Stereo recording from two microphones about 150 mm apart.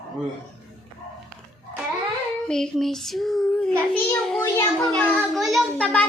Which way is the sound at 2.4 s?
5° left (ahead or behind).